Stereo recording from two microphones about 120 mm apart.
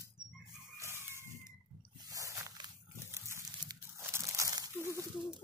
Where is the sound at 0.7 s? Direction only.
25° right (ahead or behind).